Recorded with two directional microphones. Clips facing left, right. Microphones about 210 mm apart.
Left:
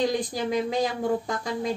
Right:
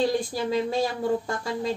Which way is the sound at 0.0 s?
15° left (ahead or behind).